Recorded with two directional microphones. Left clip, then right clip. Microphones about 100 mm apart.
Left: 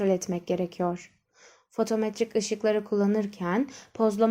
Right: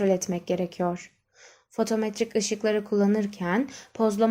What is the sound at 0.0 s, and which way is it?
Speech, 20° left (ahead or behind).